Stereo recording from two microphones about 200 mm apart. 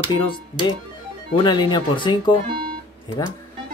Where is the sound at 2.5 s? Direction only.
25° right (ahead or behind).